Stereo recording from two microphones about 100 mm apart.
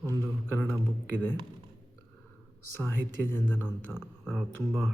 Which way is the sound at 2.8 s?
20° left (ahead or behind).